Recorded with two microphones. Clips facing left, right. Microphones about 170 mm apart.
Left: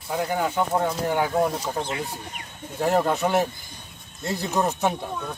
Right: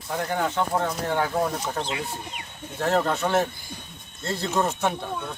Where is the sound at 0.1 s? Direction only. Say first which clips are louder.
Left 1 dB; 10° left (ahead or behind).